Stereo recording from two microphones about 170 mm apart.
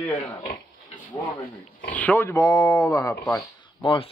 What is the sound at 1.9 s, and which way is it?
Speech, 10° left (ahead or behind).